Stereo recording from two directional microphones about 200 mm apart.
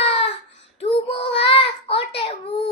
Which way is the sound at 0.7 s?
30° left (ahead or behind).